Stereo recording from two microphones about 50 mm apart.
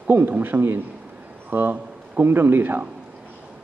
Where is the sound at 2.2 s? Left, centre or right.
Right.